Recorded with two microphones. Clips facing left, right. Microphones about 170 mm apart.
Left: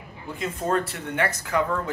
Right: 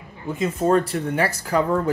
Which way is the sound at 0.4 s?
25° right (ahead or behind).